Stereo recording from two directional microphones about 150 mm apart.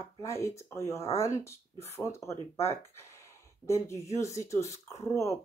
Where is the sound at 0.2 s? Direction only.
20° left (ahead or behind).